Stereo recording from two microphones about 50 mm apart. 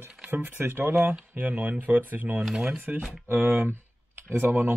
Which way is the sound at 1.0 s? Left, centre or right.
Right.